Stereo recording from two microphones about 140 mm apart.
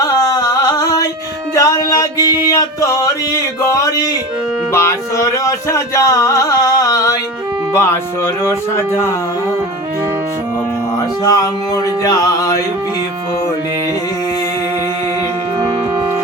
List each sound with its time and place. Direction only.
0.0 s a sound: 30° left (ahead or behind)
1.5 s music: 25° left (ahead or behind)
11.2 s music: 25° left (ahead or behind)